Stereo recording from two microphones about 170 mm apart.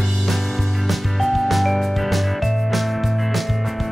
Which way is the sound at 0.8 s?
Centre (ahead or behind).